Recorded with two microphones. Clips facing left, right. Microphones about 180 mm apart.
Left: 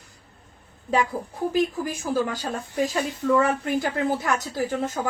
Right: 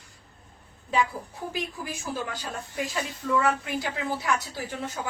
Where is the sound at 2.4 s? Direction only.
40° left (ahead or behind).